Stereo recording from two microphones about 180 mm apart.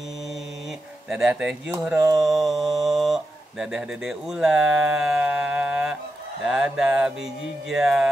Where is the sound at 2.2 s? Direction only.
Centre (ahead or behind).